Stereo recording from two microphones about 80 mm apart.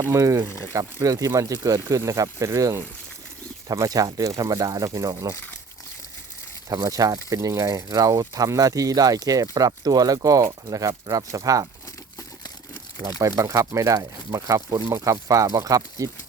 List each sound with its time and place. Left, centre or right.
0.0 s speech: right
0.4 s speech: left
1.0 s speech: right
6.7 s speech: right
13.1 s speech: right